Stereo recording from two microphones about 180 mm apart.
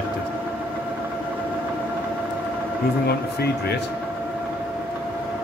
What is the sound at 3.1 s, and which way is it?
Speech, 60° left (ahead or behind).